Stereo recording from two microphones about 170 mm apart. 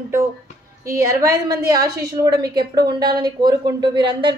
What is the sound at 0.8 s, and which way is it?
A woman's voice, 20° right (ahead or behind).